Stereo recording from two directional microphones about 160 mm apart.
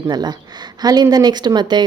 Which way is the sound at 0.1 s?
25° right (ahead or behind).